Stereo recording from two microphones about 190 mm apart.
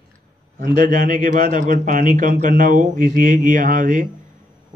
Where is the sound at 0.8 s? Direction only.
45° right (ahead or behind).